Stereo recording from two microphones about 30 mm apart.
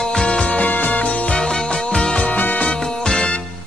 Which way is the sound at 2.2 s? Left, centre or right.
Left.